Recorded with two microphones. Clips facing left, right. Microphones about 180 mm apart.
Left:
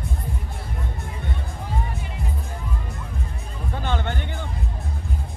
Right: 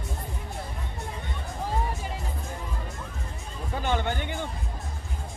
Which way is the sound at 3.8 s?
10° right (ahead or behind).